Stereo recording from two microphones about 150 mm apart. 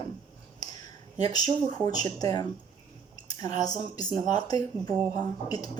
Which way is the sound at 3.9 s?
25° left (ahead or behind).